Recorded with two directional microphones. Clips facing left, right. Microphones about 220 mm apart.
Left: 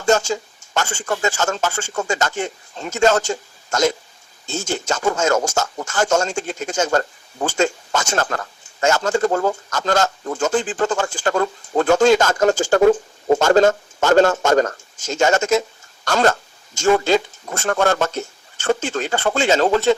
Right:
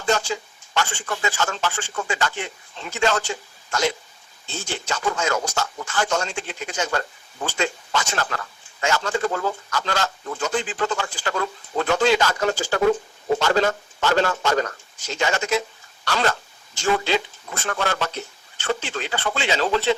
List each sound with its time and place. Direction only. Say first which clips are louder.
0.0 s speech: left 5 dB; 45° left (ahead or behind)